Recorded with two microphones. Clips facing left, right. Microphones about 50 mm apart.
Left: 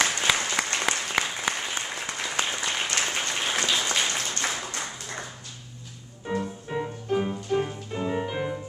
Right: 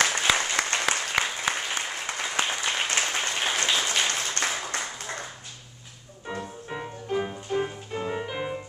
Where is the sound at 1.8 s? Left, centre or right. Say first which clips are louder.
Right 1 dB; right.